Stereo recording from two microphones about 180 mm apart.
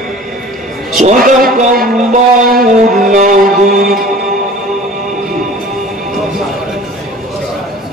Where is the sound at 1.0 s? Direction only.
45° right (ahead or behind).